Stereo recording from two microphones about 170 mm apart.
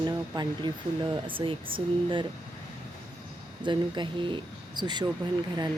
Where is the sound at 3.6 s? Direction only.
25° right (ahead or behind).